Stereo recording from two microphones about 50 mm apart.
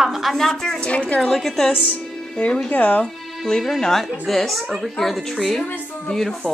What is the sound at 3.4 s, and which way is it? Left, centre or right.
A woman's voice, centre.